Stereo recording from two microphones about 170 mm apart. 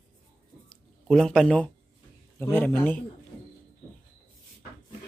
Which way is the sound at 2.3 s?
10° left (ahead or behind).